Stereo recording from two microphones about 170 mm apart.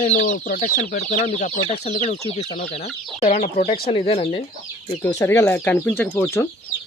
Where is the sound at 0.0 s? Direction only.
45° left (ahead or behind).